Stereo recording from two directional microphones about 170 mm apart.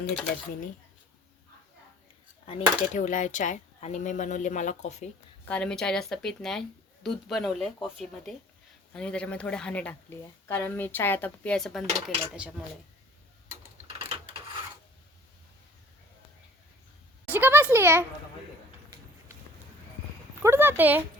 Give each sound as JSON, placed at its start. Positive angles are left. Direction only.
{"t": 2.5, "sound": "speech", "side_deg": 45}
{"t": 5.5, "sound": "speech", "side_deg": 5}
{"t": 17.2, "sound": "a sound", "side_deg": -10}
{"t": 20.4, "sound": "speech", "side_deg": -15}